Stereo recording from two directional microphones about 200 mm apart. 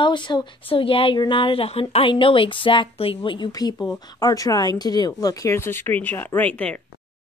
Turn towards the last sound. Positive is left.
turn(degrees=5)  # may be behind; listen again after turning